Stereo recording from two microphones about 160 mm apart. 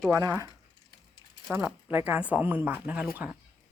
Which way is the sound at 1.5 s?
10° right (ahead or behind).